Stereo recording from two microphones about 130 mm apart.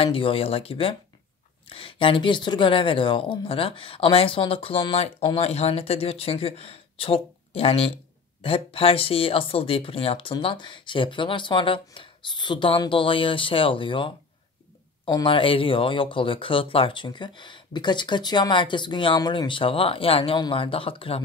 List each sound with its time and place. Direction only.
0.0 s a woman's voice: 45° left (ahead or behind)